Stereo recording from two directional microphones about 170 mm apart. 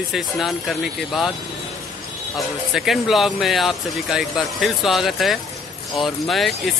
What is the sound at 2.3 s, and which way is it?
Speech, centre (ahead or behind).